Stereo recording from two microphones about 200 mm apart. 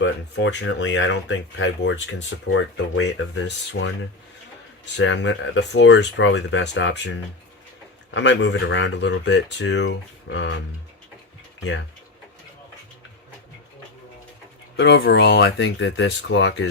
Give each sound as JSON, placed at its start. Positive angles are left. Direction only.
{"t": 0.0, "sound": "speech", "side_deg": 65}
{"t": 2.5, "sound": "speech", "side_deg": 80}
{"t": 4.9, "sound": "speech", "side_deg": 65}
{"t": 14.8, "sound": "speech", "side_deg": 60}